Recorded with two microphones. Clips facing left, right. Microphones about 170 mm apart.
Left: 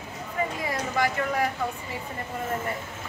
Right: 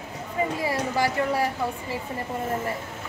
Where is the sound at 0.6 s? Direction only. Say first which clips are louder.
Right 1 dB; 30° right (ahead or behind).